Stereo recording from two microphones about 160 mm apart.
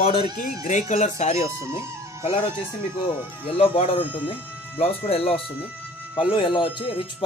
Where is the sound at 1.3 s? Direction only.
20° right (ahead or behind).